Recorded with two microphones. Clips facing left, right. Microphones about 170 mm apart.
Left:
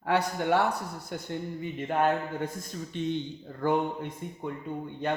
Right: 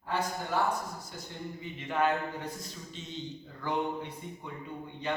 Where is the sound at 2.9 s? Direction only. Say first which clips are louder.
Left 11 dB; 60° left (ahead or behind).